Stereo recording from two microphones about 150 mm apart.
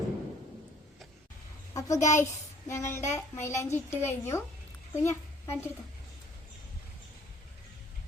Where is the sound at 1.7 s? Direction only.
20° left (ahead or behind).